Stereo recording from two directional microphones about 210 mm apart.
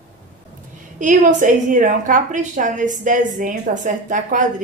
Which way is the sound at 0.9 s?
35° right (ahead or behind).